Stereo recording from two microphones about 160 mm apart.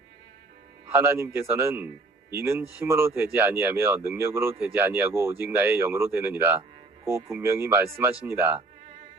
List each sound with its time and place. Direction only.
0.9 s speech: 15° right (ahead or behind)